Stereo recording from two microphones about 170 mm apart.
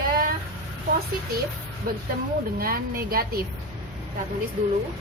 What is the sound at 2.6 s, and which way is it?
Speech, 60° right (ahead or behind).